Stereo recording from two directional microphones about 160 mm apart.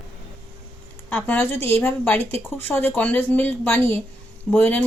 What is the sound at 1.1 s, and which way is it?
Speech, 10° left (ahead or behind).